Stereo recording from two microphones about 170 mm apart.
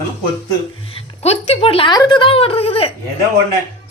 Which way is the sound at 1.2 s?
40° left (ahead or behind).